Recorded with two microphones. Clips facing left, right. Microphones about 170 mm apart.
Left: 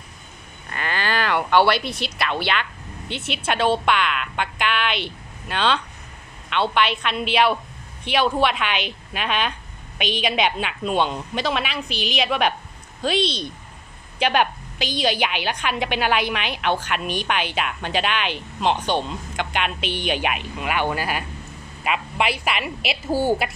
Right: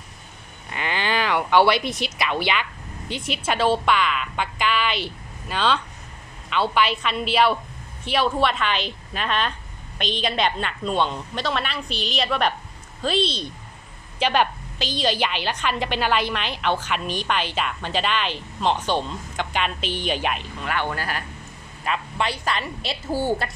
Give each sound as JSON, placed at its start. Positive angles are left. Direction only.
{"t": 0.7, "sound": "a sound", "side_deg": -15}
{"t": 2.4, "sound": "a woman's voice", "side_deg": -10}
{"t": 14.2, "sound": "a woman's voice", "side_deg": 5}